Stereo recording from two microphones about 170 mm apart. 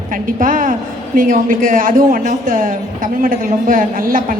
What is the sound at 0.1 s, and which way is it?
A woman's voice, 55° right (ahead or behind).